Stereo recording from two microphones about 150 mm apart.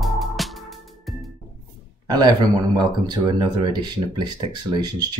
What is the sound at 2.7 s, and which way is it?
Speech, 25° right (ahead or behind).